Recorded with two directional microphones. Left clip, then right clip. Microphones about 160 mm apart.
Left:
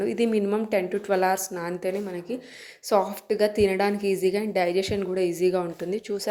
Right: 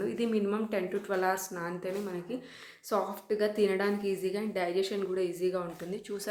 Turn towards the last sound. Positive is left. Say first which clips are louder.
# left 9 dB
turn(degrees=40)  # may be behind; listen again after turning